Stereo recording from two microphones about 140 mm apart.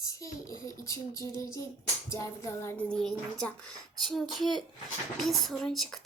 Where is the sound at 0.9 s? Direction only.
25° left (ahead or behind).